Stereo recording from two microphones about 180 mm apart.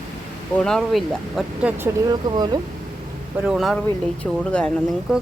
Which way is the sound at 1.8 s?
20° right (ahead or behind).